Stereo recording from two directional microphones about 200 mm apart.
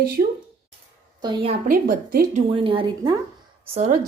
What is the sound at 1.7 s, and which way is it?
Speech, 45° right (ahead or behind).